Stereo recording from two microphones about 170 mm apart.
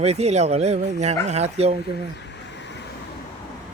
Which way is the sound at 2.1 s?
90° left.